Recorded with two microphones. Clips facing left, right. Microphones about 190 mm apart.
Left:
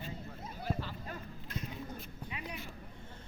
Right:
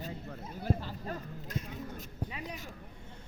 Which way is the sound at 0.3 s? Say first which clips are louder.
Right 6 dB; 50° right (ahead or behind).